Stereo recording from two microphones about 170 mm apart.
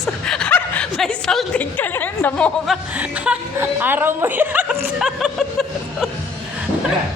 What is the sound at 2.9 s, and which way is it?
A woman's voice, 10° right (ahead or behind).